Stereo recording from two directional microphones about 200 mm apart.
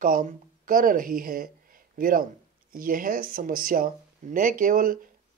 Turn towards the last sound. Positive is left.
turn(degrees=-45)  # may be behind; listen again after turning